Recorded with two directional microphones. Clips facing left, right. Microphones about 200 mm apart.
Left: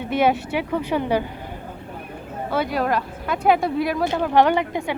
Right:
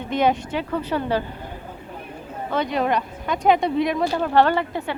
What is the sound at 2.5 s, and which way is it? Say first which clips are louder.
Speech: even; 5° left (ahead or behind).